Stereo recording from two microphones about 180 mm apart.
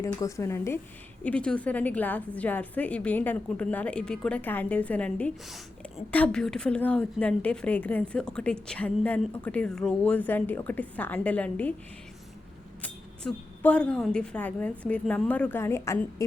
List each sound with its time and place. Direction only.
0.0 s a woman's voice: 15° left (ahead or behind)
12.8 s a woman's voice: 10° left (ahead or behind)